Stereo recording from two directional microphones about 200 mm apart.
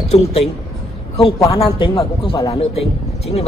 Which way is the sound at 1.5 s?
25° left (ahead or behind).